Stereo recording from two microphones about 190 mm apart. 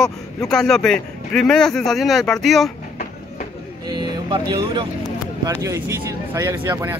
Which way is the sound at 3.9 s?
20° right (ahead or behind).